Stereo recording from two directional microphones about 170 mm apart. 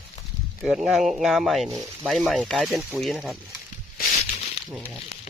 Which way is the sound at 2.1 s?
5° left (ahead or behind).